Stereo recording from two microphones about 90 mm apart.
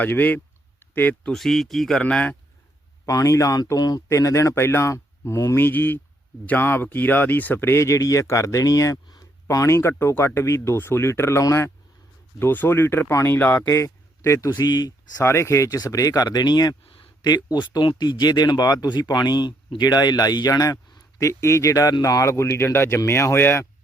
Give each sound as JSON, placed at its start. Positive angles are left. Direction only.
{"t": 0.0, "sound": "speech", "side_deg": 20}
{"t": 1.3, "sound": "a man's voice", "side_deg": 0}
{"t": 3.1, "sound": "speech", "side_deg": 40}
{"t": 4.1, "sound": "a man's voice", "side_deg": 35}
{"t": 14.5, "sound": "speech", "side_deg": 50}
{"t": 15.2, "sound": "speech", "side_deg": 30}